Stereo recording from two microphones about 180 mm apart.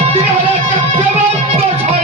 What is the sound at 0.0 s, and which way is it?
Music, 35° right (ahead or behind).